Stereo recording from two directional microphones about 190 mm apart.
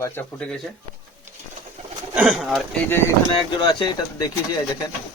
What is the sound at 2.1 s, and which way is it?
Speech, 5° right (ahead or behind).